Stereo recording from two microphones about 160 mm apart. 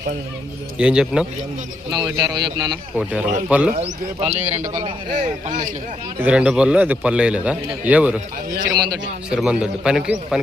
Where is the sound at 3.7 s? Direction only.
45° right (ahead or behind).